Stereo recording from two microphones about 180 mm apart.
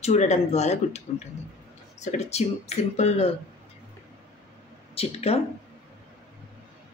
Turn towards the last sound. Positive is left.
turn(degrees=35)  # may be behind; listen again after turning